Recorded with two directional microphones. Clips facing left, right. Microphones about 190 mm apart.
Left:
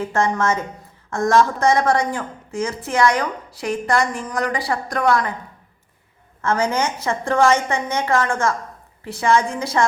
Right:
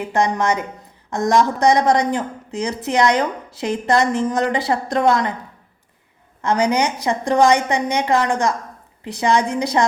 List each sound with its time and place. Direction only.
0.0 s a woman's voice: 15° right (ahead or behind)
6.4 s a woman's voice: 15° right (ahead or behind)